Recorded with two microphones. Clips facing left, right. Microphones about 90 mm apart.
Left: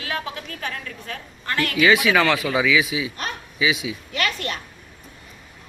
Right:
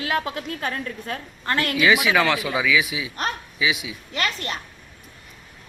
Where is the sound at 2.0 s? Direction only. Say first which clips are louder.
Left 1 dB; 5° right (ahead or behind).